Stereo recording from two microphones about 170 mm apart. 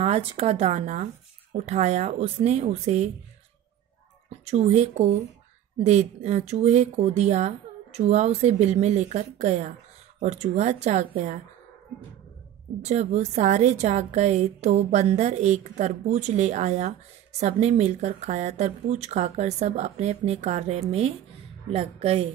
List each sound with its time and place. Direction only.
0.0 s a woman's voice: 35° right (ahead or behind)
4.3 s a woman's voice: 40° right (ahead or behind)
12.8 s a woman's voice: 40° right (ahead or behind)